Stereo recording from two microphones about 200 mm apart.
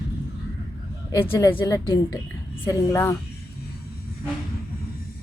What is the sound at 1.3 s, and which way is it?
A woman's voice, 15° left (ahead or behind).